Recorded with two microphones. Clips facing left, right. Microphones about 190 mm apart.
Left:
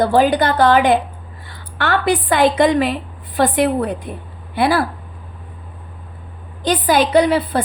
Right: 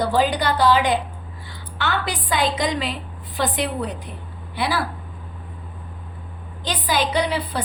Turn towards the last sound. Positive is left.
turn(degrees=50)  # may be behind; listen again after turning